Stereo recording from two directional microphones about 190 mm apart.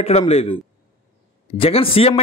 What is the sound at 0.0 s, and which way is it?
Speech, 30° left (ahead or behind).